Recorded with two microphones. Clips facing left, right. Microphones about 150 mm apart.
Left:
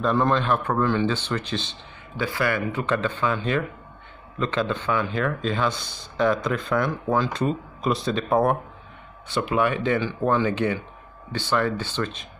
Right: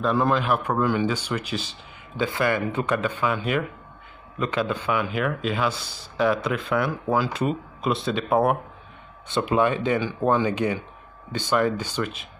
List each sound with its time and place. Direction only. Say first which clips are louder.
0.0 s speech: even; 5° right (ahead or behind)
2.2 s speech: right 1 dB; 20° right (ahead or behind)
9.3 s speech: right 1 dB; 20° right (ahead or behind)